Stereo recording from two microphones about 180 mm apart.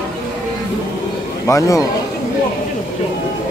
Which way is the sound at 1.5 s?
15° left (ahead or behind).